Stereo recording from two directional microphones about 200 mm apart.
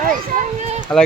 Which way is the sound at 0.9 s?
5° left (ahead or behind).